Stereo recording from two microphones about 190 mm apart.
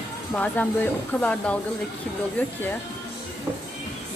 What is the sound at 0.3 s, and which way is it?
Speech, 5° left (ahead or behind).